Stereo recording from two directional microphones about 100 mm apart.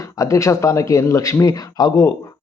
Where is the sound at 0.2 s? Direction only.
30° left (ahead or behind).